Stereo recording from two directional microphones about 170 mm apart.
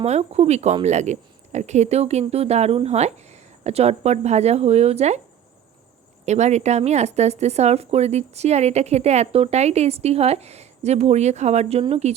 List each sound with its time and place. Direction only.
0.0 s speech: 40° right (ahead or behind)
6.2 s speech: 40° right (ahead or behind)